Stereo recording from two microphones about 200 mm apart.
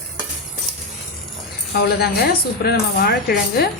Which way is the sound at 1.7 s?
50° left (ahead or behind).